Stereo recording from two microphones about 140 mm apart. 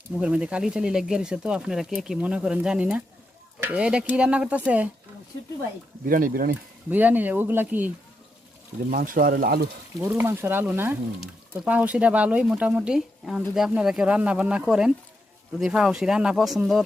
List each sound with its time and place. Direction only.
0.2 s speech: 10° right (ahead or behind)
6.1 s speech: 85° right
6.9 s speech: 10° right (ahead or behind)
8.9 s speech: 80° right
10.0 s speech: 15° right (ahead or behind)